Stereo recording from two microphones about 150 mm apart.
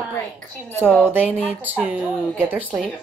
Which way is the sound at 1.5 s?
10° right (ahead or behind).